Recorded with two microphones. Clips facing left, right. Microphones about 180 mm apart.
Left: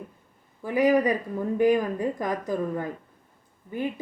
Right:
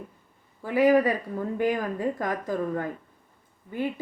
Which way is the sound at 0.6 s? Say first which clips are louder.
Right 1 dB; 15° left (ahead or behind).